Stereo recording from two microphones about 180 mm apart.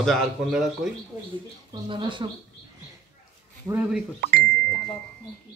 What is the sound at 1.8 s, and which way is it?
Speech, 25° right (ahead or behind).